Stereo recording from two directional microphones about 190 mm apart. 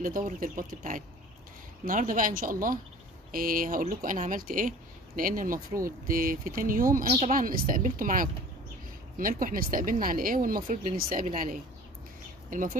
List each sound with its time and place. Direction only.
0.0 s speech: 45° right (ahead or behind)
7.1 s a woman's voice: 30° right (ahead or behind)
7.3 s speech: 45° right (ahead or behind)